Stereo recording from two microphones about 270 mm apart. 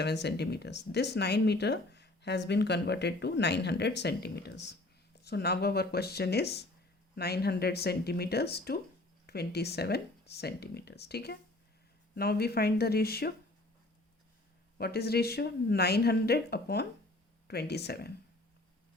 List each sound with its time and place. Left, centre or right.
0.0 s speech: left
14.8 s speech: left